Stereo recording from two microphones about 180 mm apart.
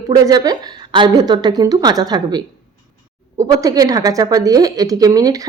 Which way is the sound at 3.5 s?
20° right (ahead or behind).